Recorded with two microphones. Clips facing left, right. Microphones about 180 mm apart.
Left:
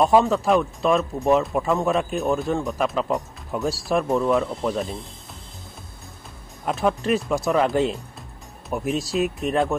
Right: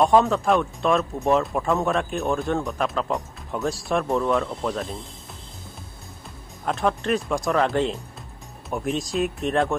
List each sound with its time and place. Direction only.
0.0 s speech: centre (ahead or behind)
6.6 s speech: 5° left (ahead or behind)